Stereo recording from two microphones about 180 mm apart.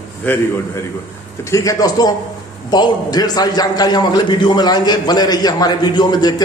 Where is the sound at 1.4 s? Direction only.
15° left (ahead or behind).